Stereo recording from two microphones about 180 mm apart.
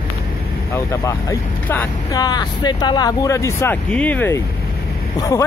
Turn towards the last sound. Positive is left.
turn(degrees=20)  # may be behind; listen again after turning